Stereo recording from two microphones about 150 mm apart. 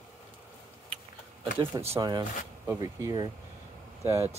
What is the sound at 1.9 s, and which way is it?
Speech, 25° right (ahead or behind).